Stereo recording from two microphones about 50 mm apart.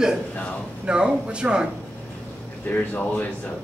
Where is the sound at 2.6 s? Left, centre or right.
Left.